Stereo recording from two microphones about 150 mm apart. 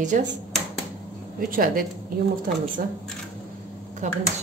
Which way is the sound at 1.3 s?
70° right (ahead or behind).